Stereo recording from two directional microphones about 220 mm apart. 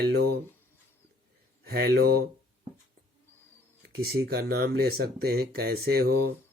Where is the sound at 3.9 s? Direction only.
45° right (ahead or behind).